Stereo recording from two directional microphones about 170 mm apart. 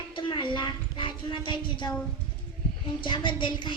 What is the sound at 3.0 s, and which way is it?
Speech, 30° left (ahead or behind).